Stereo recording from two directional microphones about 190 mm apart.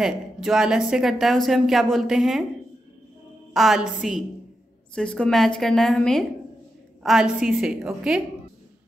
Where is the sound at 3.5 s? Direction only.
Centre (ahead or behind).